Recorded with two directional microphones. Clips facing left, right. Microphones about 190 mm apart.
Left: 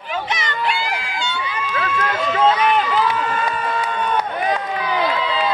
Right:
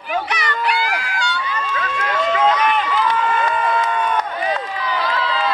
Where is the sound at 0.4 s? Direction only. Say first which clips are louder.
Right 2 dB; 25° left (ahead or behind).